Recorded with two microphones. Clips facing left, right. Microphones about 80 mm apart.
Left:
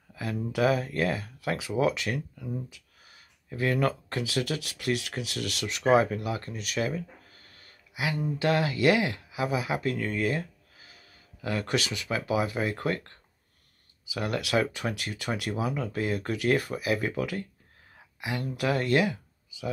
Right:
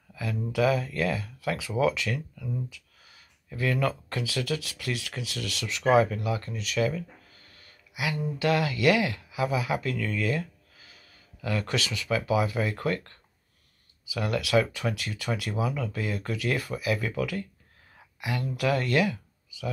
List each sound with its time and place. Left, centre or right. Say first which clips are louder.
0.1 s speech: even; left
2.1 s speech: even; left
14.1 s speech: right 2 dB; left
17.9 s a sound: right 1 dB; left
18.6 s speech: even; left